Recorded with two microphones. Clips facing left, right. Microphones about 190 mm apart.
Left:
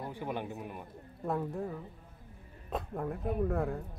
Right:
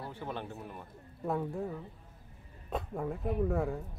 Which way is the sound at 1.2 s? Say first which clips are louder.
Even; centre (ahead or behind).